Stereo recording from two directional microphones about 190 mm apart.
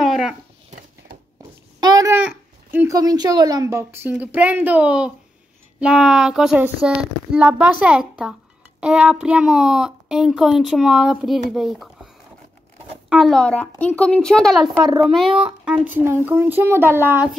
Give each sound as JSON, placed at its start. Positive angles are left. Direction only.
{"t": 0.0, "sound": "a sound", "side_deg": 0}
{"t": 1.8, "sound": "babbling", "side_deg": -20}
{"t": 2.1, "sound": "a child's voice", "side_deg": -10}
{"t": 13.1, "sound": "a child's voice", "side_deg": 0}